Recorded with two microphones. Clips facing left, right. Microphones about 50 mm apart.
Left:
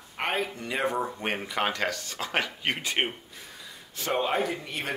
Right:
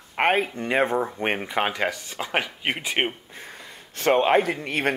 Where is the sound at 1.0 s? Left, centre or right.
Right.